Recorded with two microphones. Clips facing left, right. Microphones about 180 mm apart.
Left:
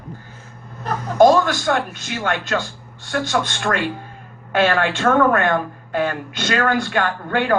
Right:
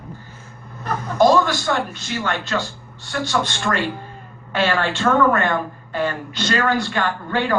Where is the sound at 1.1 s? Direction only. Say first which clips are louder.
Left 2 dB; 50° left (ahead or behind).